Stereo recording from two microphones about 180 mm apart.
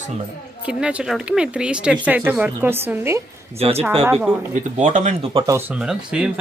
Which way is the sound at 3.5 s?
35° right (ahead or behind).